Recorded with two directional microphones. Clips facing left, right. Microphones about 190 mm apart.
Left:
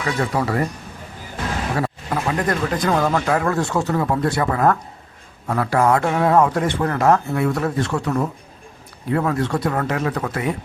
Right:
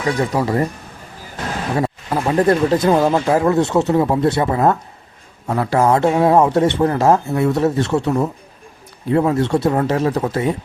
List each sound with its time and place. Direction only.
0.0 s speech: 20° right (ahead or behind)
1.7 s speech: 25° right (ahead or behind)